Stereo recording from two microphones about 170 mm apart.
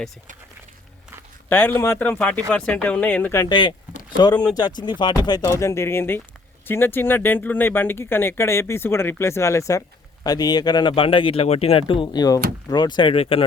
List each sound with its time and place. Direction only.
1.5 s speech: 10° left (ahead or behind); by 13.4 s 35° left (ahead or behind)